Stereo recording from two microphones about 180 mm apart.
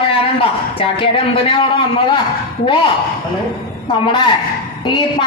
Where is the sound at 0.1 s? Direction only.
30° left (ahead or behind).